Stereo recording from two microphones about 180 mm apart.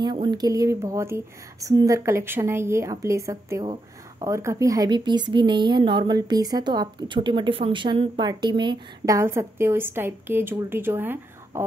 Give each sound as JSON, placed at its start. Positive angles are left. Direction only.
{"t": 0.0, "sound": "speech", "side_deg": -25}